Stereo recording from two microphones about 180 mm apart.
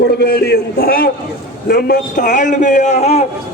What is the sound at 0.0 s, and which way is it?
A man's voice, 60° left (ahead or behind).